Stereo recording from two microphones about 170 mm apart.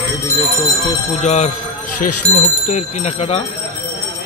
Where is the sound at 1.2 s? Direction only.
40° left (ahead or behind).